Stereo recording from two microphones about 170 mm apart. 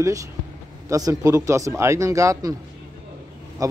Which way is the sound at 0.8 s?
20° right (ahead or behind).